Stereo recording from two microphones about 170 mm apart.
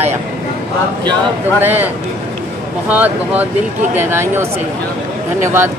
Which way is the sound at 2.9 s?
10° right (ahead or behind).